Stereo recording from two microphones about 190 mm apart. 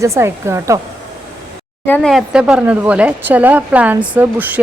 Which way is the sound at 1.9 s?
5° left (ahead or behind).